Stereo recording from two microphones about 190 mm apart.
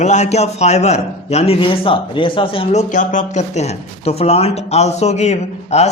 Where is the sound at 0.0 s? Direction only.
35° left (ahead or behind).